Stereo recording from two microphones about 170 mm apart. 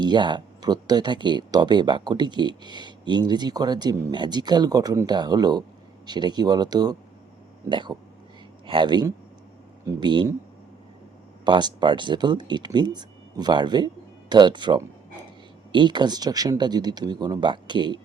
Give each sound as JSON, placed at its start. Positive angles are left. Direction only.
{"t": 0.0, "sound": "speech", "side_deg": -25}
{"t": 11.4, "sound": "speech", "side_deg": -25}